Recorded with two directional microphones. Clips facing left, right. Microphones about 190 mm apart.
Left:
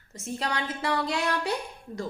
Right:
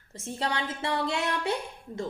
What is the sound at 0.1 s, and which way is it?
A woman's voice, 30° right (ahead or behind).